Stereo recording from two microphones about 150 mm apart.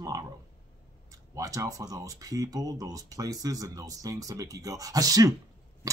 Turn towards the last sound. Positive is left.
turn(degrees=-25)  # may be behind; listen again after turning